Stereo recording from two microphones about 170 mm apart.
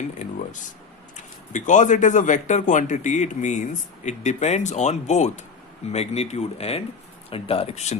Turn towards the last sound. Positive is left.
turn(degrees=40)  # may be behind; listen again after turning